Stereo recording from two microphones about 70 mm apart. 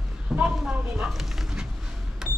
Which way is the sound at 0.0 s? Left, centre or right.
Centre.